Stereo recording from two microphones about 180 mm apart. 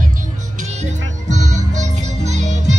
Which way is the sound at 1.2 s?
40° right (ahead or behind).